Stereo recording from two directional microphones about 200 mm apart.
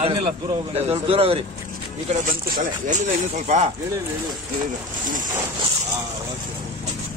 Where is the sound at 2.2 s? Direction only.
45° right (ahead or behind).